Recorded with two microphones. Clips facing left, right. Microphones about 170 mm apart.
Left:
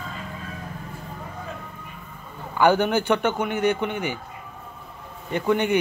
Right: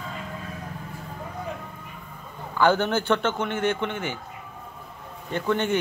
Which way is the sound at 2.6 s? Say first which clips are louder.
Left 2 dB; 15° left (ahead or behind).